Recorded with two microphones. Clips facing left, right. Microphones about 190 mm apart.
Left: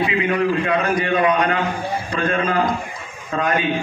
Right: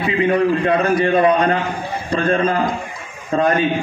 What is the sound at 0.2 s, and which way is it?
A man's voice, 35° right (ahead or behind).